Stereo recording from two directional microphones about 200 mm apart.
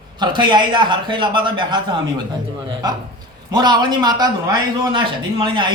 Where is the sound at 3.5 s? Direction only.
20° right (ahead or behind).